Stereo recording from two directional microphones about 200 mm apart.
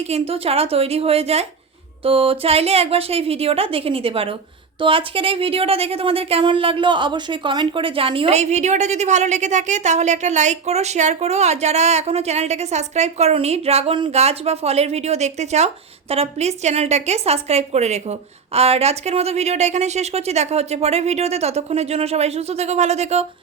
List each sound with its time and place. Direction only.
0.1 s a woman's voice: 30° right (ahead or behind)